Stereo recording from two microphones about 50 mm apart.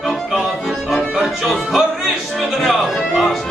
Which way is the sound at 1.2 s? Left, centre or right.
Centre.